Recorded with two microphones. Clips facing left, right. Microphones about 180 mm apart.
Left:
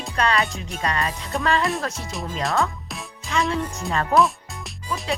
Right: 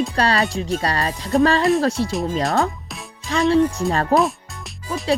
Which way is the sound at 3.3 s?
35° right (ahead or behind).